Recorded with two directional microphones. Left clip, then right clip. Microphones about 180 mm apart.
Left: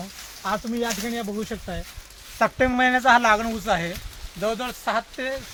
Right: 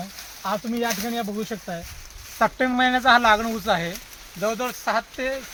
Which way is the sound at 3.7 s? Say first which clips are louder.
Right 1 dB; 5° left (ahead or behind).